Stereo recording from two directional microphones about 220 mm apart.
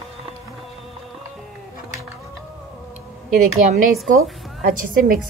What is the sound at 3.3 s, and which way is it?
A woman's voice, 35° right (ahead or behind).